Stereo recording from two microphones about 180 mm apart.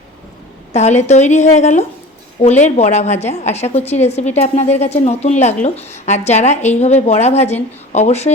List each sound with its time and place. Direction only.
0.7 s a woman's voice: 40° left (ahead or behind)